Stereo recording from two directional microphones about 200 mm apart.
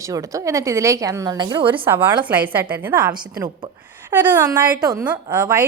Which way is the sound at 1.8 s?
10° right (ahead or behind).